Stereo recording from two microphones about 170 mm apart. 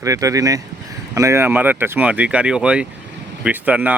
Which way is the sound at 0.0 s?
20° right (ahead or behind).